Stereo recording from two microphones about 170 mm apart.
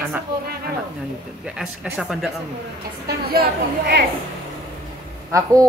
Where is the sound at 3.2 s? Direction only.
70° right (ahead or behind).